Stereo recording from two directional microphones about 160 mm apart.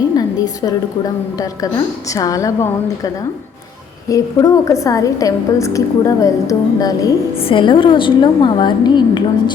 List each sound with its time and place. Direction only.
0.2 s a woman's voice: 25° left (ahead or behind)
4.1 s a woman's voice: 20° left (ahead or behind)
7.3 s a woman's voice: 35° left (ahead or behind)